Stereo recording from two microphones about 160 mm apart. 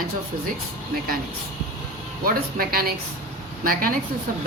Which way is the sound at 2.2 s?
65° right (ahead or behind).